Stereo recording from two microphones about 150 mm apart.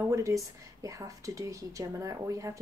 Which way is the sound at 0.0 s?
20° right (ahead or behind).